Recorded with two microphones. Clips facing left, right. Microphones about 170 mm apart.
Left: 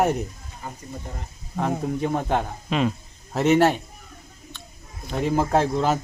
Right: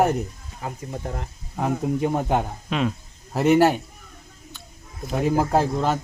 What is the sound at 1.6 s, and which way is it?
Speech, 10° right (ahead or behind).